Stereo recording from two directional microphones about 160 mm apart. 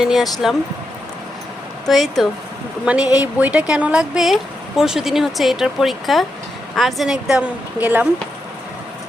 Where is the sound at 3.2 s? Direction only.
10° right (ahead or behind).